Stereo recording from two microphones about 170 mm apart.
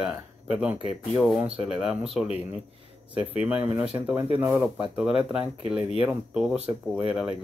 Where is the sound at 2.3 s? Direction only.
35° left (ahead or behind).